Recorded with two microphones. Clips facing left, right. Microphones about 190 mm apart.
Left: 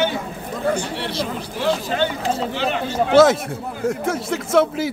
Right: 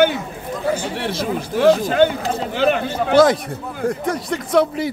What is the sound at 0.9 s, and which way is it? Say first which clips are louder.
Speech: right 3 dB; 50° right (ahead or behind).